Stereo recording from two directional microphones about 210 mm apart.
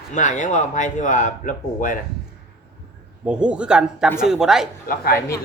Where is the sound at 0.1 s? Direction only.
35° left (ahead or behind).